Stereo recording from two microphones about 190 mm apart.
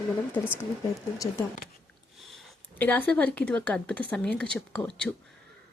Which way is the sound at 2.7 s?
10° left (ahead or behind).